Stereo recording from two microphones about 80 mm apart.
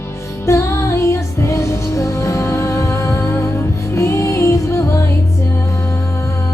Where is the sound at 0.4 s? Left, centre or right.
Left.